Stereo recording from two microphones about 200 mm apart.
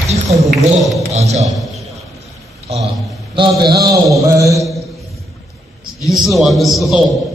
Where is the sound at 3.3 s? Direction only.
20° right (ahead or behind).